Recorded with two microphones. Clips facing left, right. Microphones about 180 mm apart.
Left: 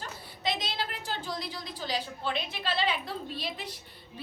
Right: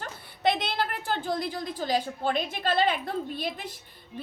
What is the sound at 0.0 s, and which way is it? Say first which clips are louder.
A woman's voice: right 8 dB; 60° right (ahead or behind).